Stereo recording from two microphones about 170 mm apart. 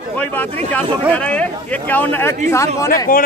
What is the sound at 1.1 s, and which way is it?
Speech, 5° left (ahead or behind).